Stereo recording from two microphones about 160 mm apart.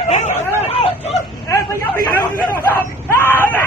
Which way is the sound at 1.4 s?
15° left (ahead or behind).